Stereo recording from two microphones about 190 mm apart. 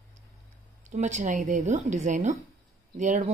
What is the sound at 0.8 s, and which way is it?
Speech, 40° right (ahead or behind).